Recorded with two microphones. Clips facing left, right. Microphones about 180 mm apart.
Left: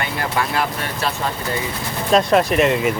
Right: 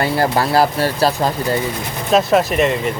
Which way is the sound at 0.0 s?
35° right (ahead or behind).